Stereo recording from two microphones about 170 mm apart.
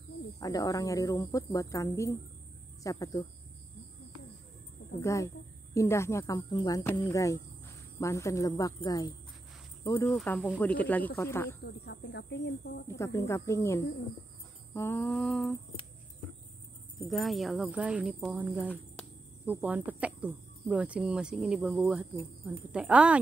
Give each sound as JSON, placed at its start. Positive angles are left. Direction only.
{"t": 0.4, "sound": "speech", "side_deg": 20}
{"t": 5.0, "sound": "speech", "side_deg": 20}
{"t": 10.0, "sound": "speech", "side_deg": 5}
{"t": 11.6, "sound": "speech", "side_deg": 75}
{"t": 12.8, "sound": "speech", "side_deg": 15}
{"t": 17.1, "sound": "speech", "side_deg": 0}
{"t": 19.4, "sound": "speech", "side_deg": -10}